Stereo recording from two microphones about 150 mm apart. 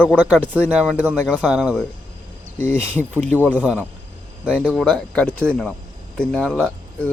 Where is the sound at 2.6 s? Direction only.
15° left (ahead or behind).